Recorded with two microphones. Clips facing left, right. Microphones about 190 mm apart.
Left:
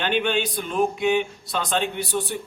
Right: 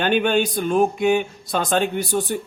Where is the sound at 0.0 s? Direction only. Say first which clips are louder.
Right 4 dB; 45° right (ahead or behind).